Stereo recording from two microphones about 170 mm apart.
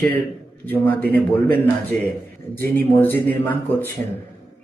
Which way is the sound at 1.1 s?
10° left (ahead or behind).